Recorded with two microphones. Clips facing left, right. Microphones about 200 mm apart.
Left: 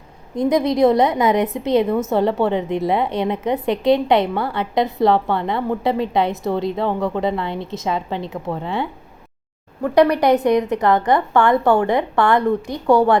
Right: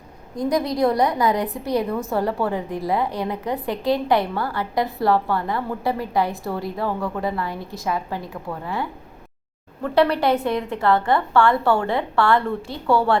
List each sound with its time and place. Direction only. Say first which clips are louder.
0.3 s a woman's voice: left 5 dB; 20° left (ahead or behind)
9.8 s a woman's voice: left 4 dB; 15° left (ahead or behind)